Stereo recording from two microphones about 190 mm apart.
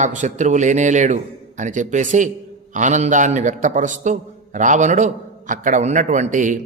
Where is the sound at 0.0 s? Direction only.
40° right (ahead or behind).